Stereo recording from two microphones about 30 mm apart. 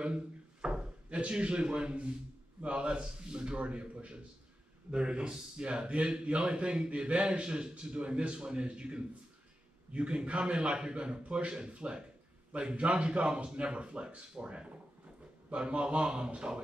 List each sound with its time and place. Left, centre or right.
0.0 s drawer open or close: right
2.6 s speech: right
4.9 s speech: right